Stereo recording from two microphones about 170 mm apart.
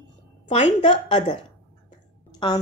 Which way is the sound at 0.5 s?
30° left (ahead or behind).